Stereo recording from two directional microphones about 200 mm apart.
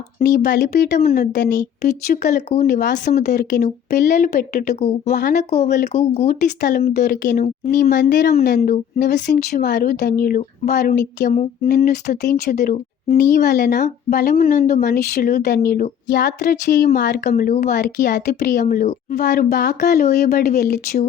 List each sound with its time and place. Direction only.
0.2 s speech: 50° left (ahead or behind)
4.7 s speech: 35° left (ahead or behind)
9.2 s speech: 60° left (ahead or behind)